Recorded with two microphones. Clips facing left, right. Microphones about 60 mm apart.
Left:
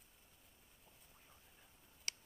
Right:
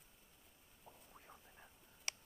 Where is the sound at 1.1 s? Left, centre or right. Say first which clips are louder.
Right 6 dB; right.